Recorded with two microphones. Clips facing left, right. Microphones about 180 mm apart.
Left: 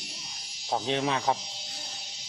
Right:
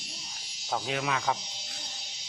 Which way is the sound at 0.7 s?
30° left (ahead or behind).